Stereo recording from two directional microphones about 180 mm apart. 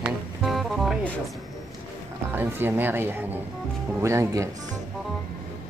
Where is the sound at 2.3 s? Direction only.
10° right (ahead or behind).